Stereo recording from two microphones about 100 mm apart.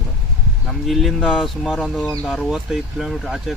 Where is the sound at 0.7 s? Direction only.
Centre (ahead or behind).